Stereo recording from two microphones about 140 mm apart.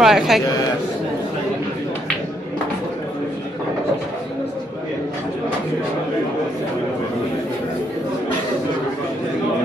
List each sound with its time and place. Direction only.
0.0 s speech: centre (ahead or behind)